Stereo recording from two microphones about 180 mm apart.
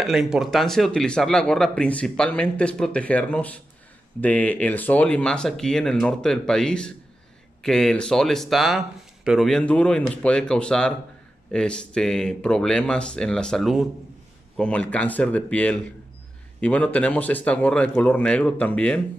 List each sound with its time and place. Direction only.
0.0 s speech: centre (ahead or behind)